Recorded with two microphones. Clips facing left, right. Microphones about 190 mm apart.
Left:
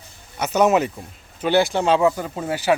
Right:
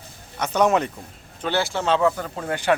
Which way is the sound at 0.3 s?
5° left (ahead or behind).